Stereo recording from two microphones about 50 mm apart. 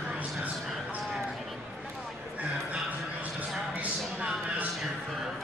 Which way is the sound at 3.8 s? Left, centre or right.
Right.